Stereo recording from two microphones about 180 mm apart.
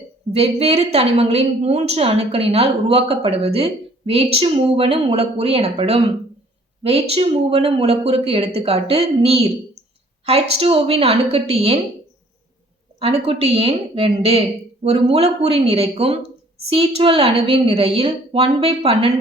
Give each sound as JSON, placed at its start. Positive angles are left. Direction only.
{"t": 0.3, "sound": "a woman's voice", "side_deg": -35}
{"t": 7.1, "sound": "a woman's voice", "side_deg": -35}
{"t": 13.0, "sound": "a woman's voice", "side_deg": -30}